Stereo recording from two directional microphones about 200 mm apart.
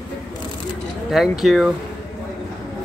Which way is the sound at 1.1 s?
Centre (ahead or behind).